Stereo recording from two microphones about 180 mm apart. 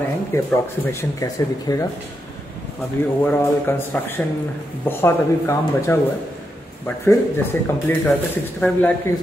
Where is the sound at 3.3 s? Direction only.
10° left (ahead or behind).